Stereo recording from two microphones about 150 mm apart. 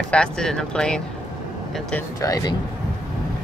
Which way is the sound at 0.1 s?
5° left (ahead or behind).